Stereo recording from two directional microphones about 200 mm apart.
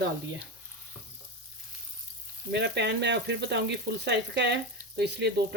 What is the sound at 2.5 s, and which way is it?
Speech, 60° right (ahead or behind).